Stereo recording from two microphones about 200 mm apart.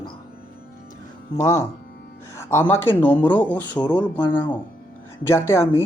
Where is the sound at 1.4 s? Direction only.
10° left (ahead or behind).